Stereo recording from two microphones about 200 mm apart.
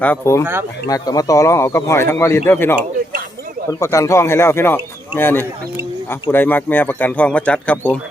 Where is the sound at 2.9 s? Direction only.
50° right (ahead or behind).